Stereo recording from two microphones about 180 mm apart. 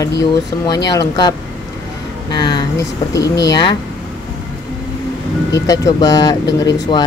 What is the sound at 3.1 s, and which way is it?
Speech, 20° left (ahead or behind).